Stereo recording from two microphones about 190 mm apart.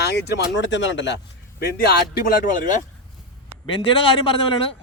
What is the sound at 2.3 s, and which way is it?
Speech, 40° left (ahead or behind).